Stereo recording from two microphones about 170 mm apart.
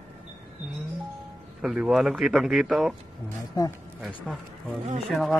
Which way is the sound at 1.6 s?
5° right (ahead or behind).